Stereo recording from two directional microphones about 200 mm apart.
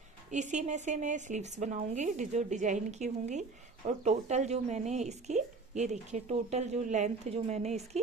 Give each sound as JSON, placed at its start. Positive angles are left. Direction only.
{"t": 0.3, "sound": "speech", "side_deg": -35}